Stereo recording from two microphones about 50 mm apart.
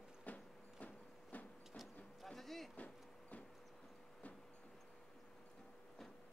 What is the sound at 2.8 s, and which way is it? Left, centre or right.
Vehicle, left.